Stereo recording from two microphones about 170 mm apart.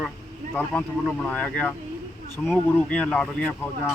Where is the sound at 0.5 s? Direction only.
5° left (ahead or behind).